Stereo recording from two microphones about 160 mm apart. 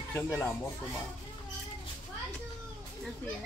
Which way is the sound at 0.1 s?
15° left (ahead or behind).